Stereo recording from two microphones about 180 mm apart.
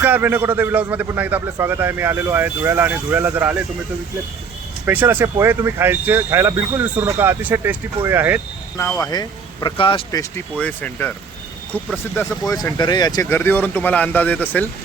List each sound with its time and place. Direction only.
0.0 s a man's voice: 10° right (ahead or behind)
4.9 s a man's voice: 10° right (ahead or behind)
9.0 s speech: 20° left (ahead or behind)
10.6 s speech: 10° left (ahead or behind)
12.1 s speech: 15° left (ahead or behind)